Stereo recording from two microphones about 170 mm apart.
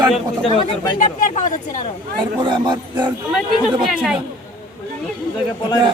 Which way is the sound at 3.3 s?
5° right (ahead or behind).